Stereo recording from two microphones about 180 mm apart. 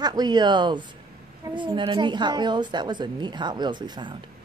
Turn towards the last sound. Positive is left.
turn(degrees=-25)  # may be behind; listen again after turning